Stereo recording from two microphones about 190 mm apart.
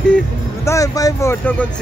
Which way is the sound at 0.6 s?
15° left (ahead or behind).